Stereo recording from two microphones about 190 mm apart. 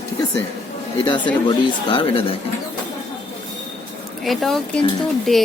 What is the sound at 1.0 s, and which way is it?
Speech, 25° left (ahead or behind).